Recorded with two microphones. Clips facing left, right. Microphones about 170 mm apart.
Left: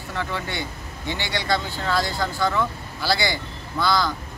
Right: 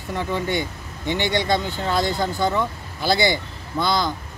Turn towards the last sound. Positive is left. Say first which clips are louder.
# even
turn(degrees=-20)  # may be behind; listen again after turning